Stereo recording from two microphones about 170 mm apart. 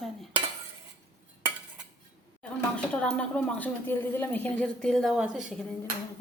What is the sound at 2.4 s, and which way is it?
Speech, 5° left (ahead or behind).